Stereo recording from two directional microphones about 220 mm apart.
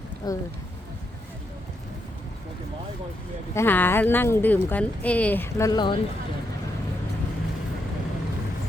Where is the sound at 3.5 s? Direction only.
10° left (ahead or behind).